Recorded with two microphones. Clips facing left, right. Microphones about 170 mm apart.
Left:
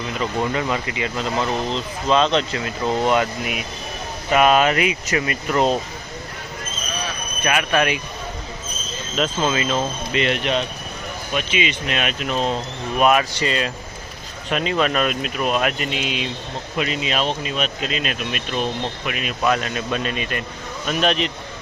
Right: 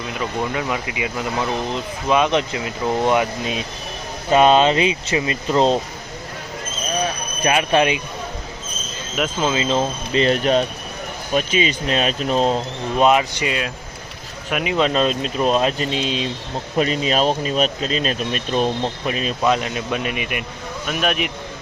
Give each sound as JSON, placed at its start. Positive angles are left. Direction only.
{"t": 0.2, "sound": "speech", "side_deg": -5}
{"t": 7.4, "sound": "speech", "side_deg": -30}
{"t": 9.1, "sound": "speech", "side_deg": -10}
{"t": 13.0, "sound": "speech", "side_deg": -20}
{"t": 13.4, "sound": "speech", "side_deg": -5}
{"t": 19.4, "sound": "speech", "side_deg": -20}